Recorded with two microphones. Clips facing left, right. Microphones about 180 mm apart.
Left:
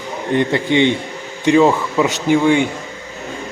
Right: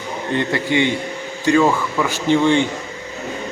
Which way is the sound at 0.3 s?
20° left (ahead or behind).